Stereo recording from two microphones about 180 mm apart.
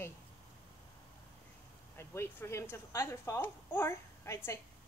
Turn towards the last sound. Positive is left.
turn(degrees=10)  # may be behind; listen again after turning